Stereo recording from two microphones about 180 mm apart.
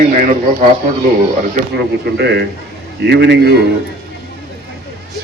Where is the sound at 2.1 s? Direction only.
65° right (ahead or behind).